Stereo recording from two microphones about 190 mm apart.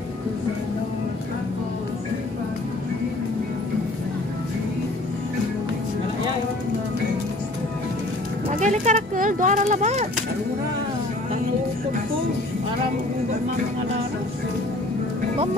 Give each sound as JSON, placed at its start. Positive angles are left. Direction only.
{"t": 8.5, "sound": "speech", "side_deg": -40}